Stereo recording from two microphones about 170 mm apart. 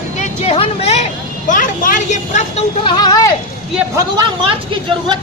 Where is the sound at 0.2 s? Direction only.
35° left (ahead or behind).